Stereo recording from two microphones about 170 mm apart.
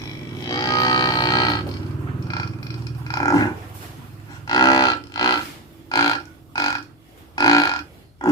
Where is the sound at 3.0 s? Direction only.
20° left (ahead or behind).